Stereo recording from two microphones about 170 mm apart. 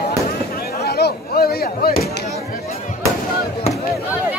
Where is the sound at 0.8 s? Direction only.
70° left (ahead or behind).